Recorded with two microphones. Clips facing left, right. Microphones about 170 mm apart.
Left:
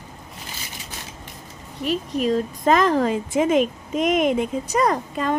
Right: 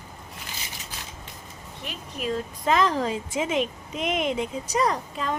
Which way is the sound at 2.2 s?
50° left (ahead or behind).